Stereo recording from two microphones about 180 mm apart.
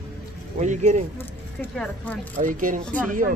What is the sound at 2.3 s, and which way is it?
Speech, 45° right (ahead or behind).